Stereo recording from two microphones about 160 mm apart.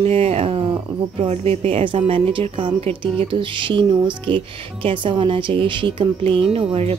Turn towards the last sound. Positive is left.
turn(degrees=-40)  # may be behind; listen again after turning